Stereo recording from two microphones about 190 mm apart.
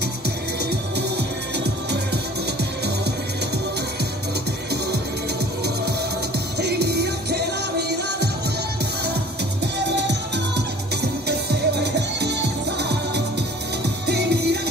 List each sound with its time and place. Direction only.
0.7 s music: 60° right (ahead or behind)
6.6 s music: 60° right (ahead or behind)
9.9 s music: 65° right (ahead or behind)